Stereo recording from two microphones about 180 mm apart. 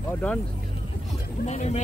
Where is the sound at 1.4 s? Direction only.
40° left (ahead or behind).